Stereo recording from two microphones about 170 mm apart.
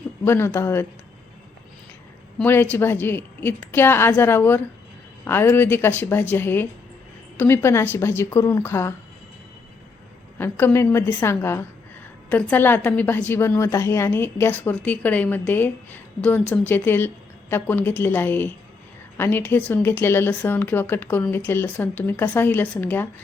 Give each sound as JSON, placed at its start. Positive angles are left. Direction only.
{"t": 0.3, "sound": "a woman's voice", "side_deg": 15}
{"t": 2.4, "sound": "a woman's voice", "side_deg": 10}
{"t": 10.3, "sound": "a woman's voice", "side_deg": 10}